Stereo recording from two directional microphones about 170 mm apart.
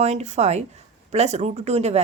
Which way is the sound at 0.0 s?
40° right (ahead or behind).